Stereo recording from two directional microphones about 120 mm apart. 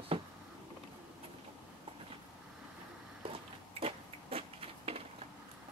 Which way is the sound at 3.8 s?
55° right (ahead or behind).